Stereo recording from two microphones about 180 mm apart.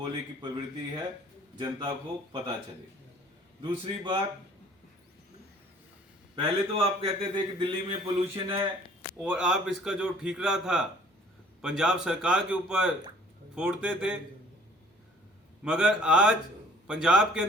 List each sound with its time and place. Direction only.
0.0 s speech: 25° right (ahead or behind)
3.6 s speech: 25° right (ahead or behind)
6.3 s a man's voice: 30° right (ahead or behind)
9.1 s a man's voice: 5° right (ahead or behind)
15.6 s a man's voice: 5° right (ahead or behind)